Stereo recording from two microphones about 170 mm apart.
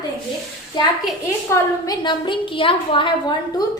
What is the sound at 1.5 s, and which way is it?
A woman's voice, 25° left (ahead or behind).